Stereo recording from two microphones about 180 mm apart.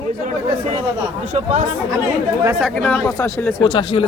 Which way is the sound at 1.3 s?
40° right (ahead or behind).